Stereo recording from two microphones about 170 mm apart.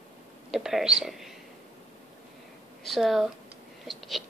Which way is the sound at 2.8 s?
Centre (ahead or behind).